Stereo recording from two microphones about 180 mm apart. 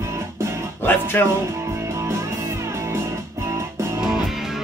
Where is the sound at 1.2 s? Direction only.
10° left (ahead or behind).